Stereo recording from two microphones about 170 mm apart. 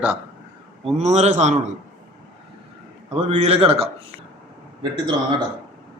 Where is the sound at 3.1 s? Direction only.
40° right (ahead or behind).